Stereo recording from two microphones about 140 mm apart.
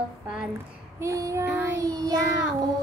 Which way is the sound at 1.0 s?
25° right (ahead or behind).